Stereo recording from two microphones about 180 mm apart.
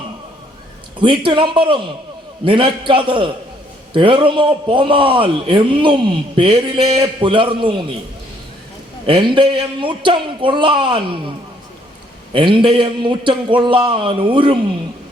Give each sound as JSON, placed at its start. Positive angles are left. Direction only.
{"t": 0.9, "sound": "a man's voice", "side_deg": -25}
{"t": 9.0, "sound": "a man's voice", "side_deg": -25}
{"t": 12.3, "sound": "a man's voice", "side_deg": -30}